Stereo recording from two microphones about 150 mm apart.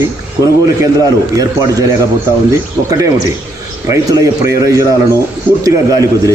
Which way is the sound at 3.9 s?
20° right (ahead or behind).